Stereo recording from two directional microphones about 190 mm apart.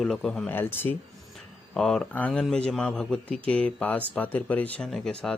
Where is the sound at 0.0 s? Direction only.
5° left (ahead or behind).